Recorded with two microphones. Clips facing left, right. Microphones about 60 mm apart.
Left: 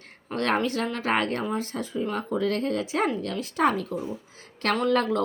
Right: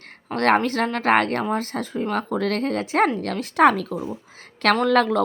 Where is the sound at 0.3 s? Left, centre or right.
Right.